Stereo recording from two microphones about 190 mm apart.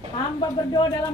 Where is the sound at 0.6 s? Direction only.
20° left (ahead or behind).